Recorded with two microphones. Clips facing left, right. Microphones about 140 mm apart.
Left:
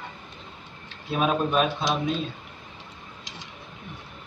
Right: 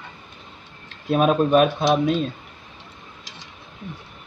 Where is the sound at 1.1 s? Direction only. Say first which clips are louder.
Right 7 dB; 50° right (ahead or behind).